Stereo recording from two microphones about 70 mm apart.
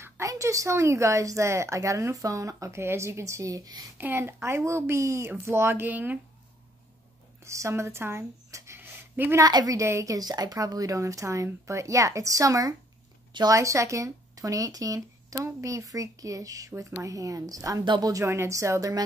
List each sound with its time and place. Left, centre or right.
0.2 s speech: right
4.0 s speech: right
7.4 s speech: right
8.7 s a sound: right
9.4 s speech: right
9.8 s speech: right